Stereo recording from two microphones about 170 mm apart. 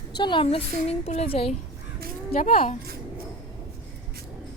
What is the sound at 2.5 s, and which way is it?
Speech, 35° left (ahead or behind).